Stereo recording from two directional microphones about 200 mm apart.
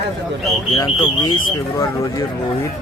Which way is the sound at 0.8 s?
20° left (ahead or behind).